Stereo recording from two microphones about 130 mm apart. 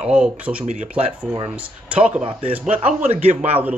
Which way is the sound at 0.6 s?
65° right (ahead or behind).